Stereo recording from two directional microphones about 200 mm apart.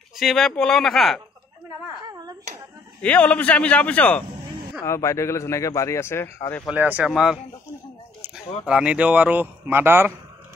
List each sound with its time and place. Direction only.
0.2 s speech: centre (ahead or behind)
2.0 s a sound: 20° right (ahead or behind)
3.0 s a man's voice: 5° left (ahead or behind)
6.6 s speech: 5° right (ahead or behind)
8.6 s a man's voice: 5° right (ahead or behind)